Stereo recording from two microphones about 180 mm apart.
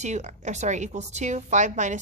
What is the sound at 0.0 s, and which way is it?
A woman's voice, 40° right (ahead or behind).